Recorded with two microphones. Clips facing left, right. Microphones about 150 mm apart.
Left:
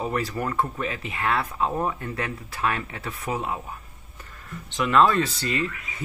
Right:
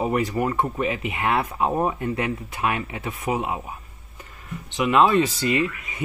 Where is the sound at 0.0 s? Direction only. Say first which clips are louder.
Right 5 dB; 15° right (ahead or behind).